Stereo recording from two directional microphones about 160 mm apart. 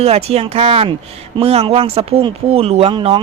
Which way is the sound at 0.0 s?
40° right (ahead or behind).